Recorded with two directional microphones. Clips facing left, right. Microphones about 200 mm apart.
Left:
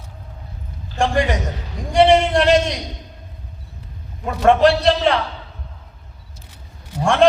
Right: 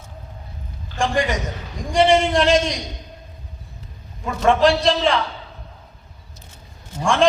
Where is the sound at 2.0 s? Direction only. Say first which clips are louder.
Left 2 dB; 60° left (ahead or behind).